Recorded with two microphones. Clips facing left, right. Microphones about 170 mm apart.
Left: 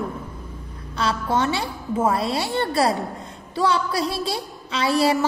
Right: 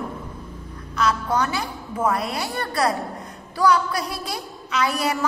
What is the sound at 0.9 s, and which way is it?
A woman's voice, 30° left (ahead or behind).